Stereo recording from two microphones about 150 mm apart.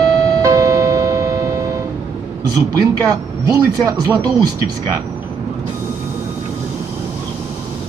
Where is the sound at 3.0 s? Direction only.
25° right (ahead or behind).